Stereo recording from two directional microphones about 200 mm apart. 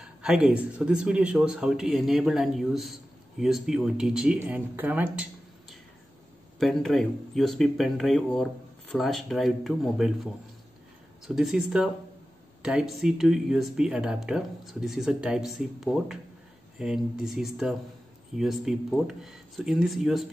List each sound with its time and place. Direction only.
0.0 s speech: 5° right (ahead or behind)
6.6 s speech: centre (ahead or behind)